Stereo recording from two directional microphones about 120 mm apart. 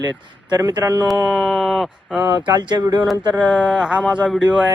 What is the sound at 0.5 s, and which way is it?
Speech, 35° right (ahead or behind).